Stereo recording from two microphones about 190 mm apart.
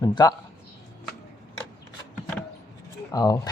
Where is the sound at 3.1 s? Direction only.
20° left (ahead or behind).